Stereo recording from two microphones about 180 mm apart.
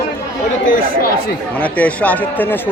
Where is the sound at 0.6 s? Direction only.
50° left (ahead or behind).